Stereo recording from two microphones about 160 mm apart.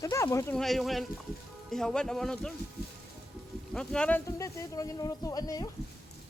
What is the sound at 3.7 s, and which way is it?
Speech, 5° left (ahead or behind).